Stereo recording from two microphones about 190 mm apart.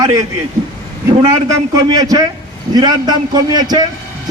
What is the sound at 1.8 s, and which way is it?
A man's voice, 20° right (ahead or behind).